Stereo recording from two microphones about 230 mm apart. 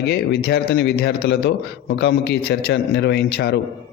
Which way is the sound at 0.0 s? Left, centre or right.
Left.